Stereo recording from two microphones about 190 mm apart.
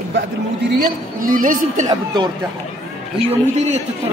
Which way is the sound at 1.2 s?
45° right (ahead or behind).